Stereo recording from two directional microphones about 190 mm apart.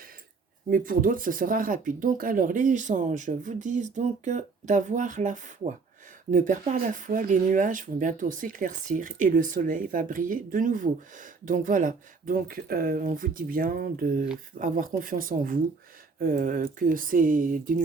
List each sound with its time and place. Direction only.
0.7 s speech: 45° right (ahead or behind)